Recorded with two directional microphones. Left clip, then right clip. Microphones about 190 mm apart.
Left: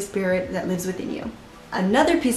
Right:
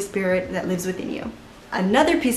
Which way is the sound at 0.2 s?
Centre (ahead or behind).